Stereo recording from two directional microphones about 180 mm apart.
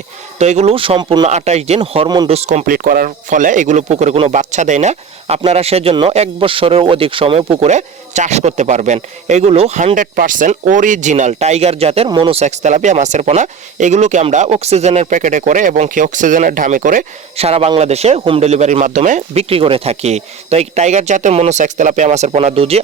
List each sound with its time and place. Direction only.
0.3 s speech: 40° right (ahead or behind)
1.3 s speech: 40° right (ahead or behind)
2.6 s speech: 50° right (ahead or behind); by 22.8 s 35° right (ahead or behind)